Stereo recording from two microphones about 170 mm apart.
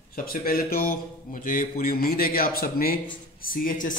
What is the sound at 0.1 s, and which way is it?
A man's voice, 60° left (ahead or behind).